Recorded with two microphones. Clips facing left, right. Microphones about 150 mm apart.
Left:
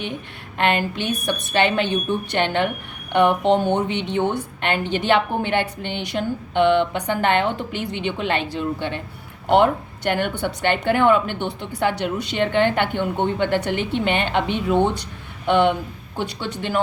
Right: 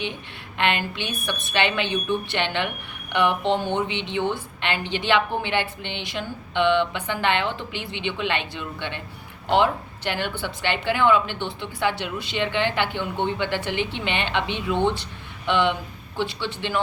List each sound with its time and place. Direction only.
0.6 s a woman's voice: 45° left (ahead or behind)
9.5 s a woman's voice: 50° left (ahead or behind)